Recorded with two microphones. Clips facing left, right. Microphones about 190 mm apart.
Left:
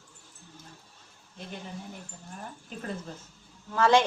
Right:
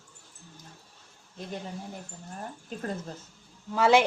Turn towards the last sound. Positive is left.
turn(degrees=-10)  # may be behind; listen again after turning